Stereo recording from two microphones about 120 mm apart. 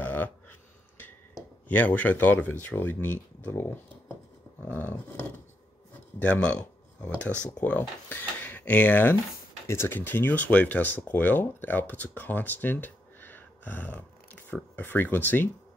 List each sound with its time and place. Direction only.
0.0 s a sound: 15° left (ahead or behind)
1.7 s speech: 15° left (ahead or behind)
7.6 s speech: 15° left (ahead or behind)